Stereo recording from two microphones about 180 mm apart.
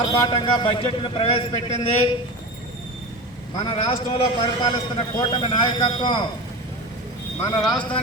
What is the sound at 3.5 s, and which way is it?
A man's voice, 25° left (ahead or behind).